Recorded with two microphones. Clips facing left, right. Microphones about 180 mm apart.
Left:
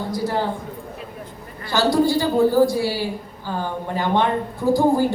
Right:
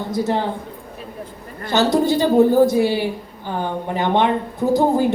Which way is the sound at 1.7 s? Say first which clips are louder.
Right 1 dB; 20° right (ahead or behind).